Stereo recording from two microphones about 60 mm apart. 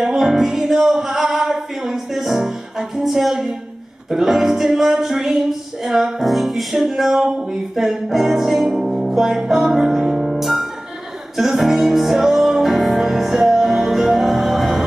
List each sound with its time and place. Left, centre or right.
0.0 s music: centre